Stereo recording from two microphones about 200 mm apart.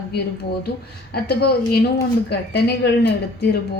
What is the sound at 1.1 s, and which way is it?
Speech, 50° left (ahead or behind).